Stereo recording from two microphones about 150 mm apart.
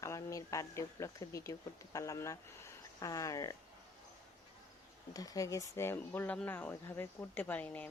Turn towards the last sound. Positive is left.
turn(degrees=10)  # may be behind; listen again after turning